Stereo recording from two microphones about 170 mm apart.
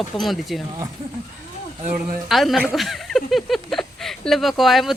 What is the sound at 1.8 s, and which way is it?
Speech, 50° right (ahead or behind).